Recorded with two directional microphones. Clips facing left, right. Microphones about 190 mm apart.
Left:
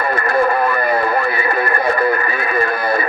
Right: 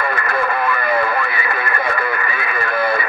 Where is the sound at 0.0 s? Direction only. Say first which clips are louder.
Left 4 dB; 35° left (ahead or behind).